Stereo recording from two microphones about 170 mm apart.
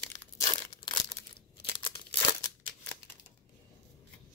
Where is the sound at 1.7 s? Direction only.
30° left (ahead or behind).